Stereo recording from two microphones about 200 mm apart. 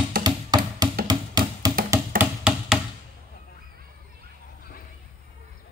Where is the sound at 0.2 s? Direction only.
20° right (ahead or behind).